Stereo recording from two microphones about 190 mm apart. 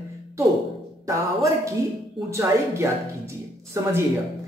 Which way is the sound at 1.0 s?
15° right (ahead or behind).